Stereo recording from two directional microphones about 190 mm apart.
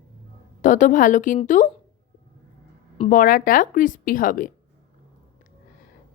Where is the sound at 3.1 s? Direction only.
45° left (ahead or behind).